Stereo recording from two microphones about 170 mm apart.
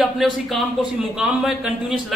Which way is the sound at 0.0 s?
Centre (ahead or behind).